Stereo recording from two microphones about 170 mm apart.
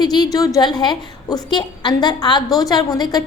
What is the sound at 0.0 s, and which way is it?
A woman's voice, 25° left (ahead or behind).